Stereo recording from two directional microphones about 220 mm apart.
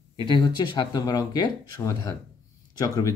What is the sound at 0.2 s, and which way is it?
Speech, 20° left (ahead or behind).